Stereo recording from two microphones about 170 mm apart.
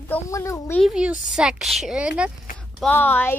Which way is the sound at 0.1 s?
15° left (ahead or behind).